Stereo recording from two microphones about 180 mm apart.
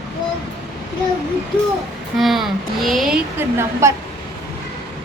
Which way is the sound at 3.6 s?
15° right (ahead or behind).